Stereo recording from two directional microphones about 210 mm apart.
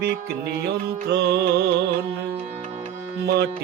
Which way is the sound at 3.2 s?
50° right (ahead or behind).